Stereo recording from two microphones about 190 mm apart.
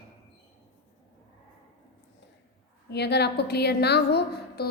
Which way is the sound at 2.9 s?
60° left (ahead or behind).